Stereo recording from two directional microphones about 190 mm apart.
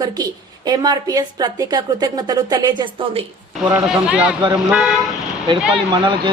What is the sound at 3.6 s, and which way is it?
Speech, 5° right (ahead or behind).